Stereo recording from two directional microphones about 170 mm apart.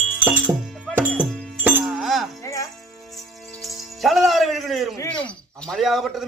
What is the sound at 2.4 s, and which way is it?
Music, 20° left (ahead or behind).